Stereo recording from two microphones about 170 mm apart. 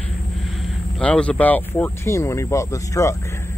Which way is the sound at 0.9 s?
5° left (ahead or behind).